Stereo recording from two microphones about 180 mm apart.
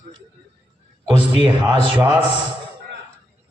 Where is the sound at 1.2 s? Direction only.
25° right (ahead or behind).